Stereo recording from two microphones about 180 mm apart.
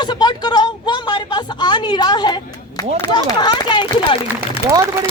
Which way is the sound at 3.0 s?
25° left (ahead or behind).